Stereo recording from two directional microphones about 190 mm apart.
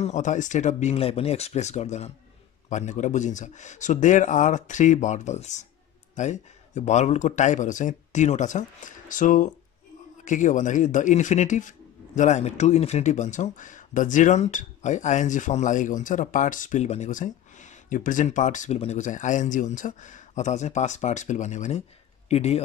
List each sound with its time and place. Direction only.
0.0 s speech: 40° left (ahead or behind)